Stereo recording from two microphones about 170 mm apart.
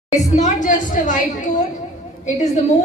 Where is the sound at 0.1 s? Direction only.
45° left (ahead or behind).